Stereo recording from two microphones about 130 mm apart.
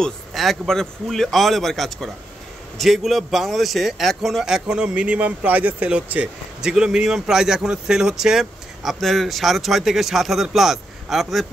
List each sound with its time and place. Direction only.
0.0 s a man's voice: centre (ahead or behind)